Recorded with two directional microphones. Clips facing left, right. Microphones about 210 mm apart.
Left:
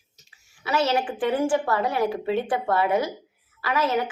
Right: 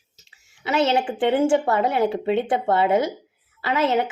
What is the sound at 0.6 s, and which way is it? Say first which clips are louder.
A woman's voice: right 3 dB; 20° right (ahead or behind).